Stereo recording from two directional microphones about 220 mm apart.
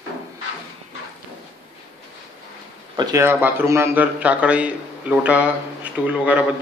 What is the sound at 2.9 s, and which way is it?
A man's voice, 15° right (ahead or behind).